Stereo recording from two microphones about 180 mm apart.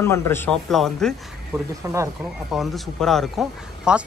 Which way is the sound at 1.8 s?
15° right (ahead or behind).